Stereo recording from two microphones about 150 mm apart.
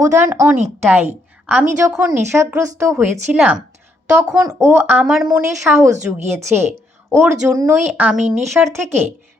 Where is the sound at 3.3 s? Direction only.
10° right (ahead or behind).